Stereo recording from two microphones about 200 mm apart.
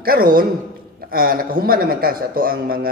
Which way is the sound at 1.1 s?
45° right (ahead or behind).